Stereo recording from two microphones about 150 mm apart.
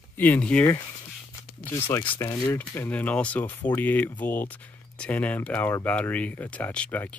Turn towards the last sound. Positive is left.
turn(degrees=10)  # may be behind; listen again after turning